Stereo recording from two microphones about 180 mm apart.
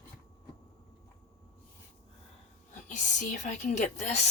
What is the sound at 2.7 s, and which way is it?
Speech, 45° left (ahead or behind).